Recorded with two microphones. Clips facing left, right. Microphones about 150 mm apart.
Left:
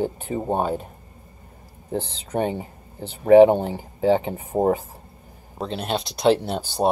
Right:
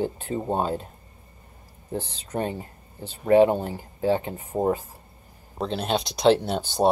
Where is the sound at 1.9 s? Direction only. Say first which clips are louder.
Left 4 dB; 20° left (ahead or behind).